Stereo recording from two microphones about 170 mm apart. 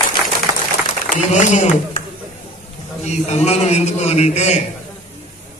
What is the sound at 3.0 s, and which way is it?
A man's voice, 40° left (ahead or behind).